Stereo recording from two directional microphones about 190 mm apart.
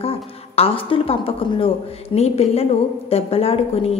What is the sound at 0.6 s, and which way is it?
Speech, 30° left (ahead or behind).